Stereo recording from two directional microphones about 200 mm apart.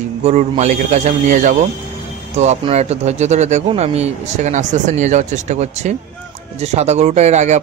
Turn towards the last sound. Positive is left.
turn(degrees=-35)  # may be behind; listen again after turning